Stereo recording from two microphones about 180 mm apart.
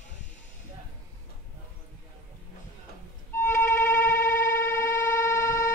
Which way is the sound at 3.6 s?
10° left (ahead or behind).